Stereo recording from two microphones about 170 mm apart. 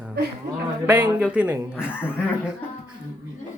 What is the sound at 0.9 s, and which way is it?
Speech, 10° right (ahead or behind).